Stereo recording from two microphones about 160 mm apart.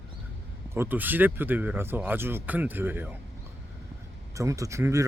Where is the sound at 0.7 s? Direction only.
15° right (ahead or behind).